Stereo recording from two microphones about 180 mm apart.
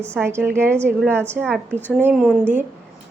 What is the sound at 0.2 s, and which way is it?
A woman's voice, 15° right (ahead or behind).